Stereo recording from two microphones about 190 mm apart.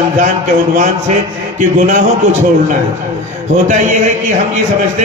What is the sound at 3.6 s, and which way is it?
Speech, 40° right (ahead or behind).